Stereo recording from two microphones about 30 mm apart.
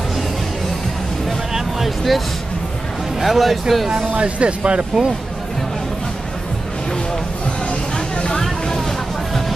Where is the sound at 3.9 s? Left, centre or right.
Right.